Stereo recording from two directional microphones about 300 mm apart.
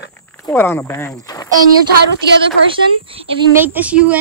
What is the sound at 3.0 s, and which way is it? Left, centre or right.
Speech, centre.